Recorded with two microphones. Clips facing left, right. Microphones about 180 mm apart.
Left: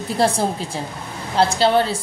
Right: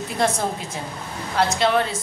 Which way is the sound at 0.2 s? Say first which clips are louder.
Left 3 dB; 30° left (ahead or behind).